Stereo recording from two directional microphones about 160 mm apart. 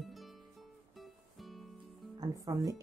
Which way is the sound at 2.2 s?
25° right (ahead or behind).